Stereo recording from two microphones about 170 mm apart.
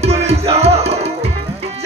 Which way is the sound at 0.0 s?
35° right (ahead or behind).